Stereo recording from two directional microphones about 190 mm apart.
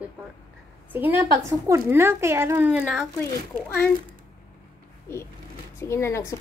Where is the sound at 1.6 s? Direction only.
15° right (ahead or behind).